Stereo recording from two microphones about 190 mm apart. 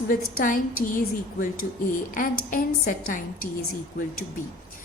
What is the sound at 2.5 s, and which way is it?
A woman's voice, 45° left (ahead or behind).